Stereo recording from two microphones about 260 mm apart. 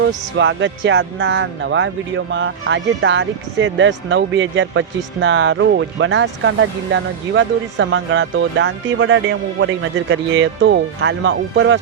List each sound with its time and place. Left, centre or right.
0.3 s speech: right